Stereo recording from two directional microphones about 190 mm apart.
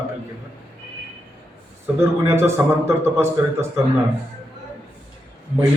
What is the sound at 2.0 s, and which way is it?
A man's voice, 15° right (ahead or behind).